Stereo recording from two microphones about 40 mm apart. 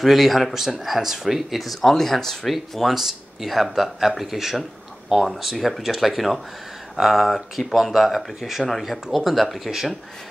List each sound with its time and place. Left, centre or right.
0.0 s speech: centre
8.4 s speech: centre
8.6 s speech: centre